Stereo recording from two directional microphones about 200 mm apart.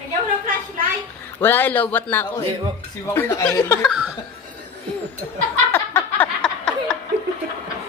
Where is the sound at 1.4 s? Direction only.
10° left (ahead or behind).